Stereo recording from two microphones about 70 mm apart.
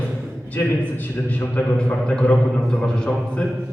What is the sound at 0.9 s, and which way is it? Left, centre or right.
A man's voice, left.